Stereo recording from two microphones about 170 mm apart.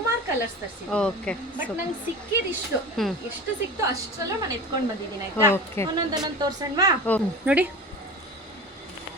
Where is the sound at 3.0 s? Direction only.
Centre (ahead or behind).